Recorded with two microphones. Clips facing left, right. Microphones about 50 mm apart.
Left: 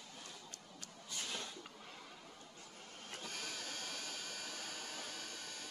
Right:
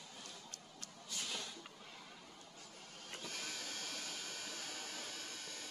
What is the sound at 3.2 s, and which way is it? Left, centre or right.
Printer, left.